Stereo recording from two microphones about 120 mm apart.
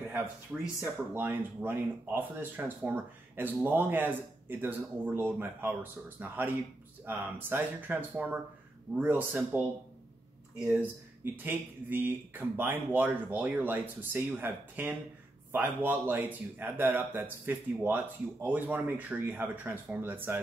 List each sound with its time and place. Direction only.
0.5 s speech: 10° right (ahead or behind)